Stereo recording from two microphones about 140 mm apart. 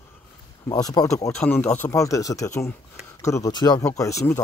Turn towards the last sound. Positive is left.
turn(degrees=20)  # may be behind; listen again after turning